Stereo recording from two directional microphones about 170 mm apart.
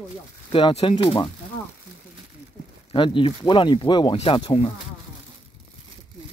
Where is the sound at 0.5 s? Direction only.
30° left (ahead or behind).